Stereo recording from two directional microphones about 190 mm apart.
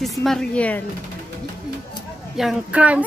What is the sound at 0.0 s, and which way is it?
Speech, centre (ahead or behind).